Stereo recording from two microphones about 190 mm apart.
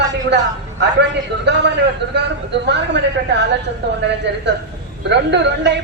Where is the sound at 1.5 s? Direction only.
65° right (ahead or behind).